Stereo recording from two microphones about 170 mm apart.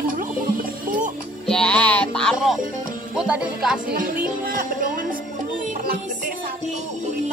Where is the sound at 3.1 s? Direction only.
5° right (ahead or behind).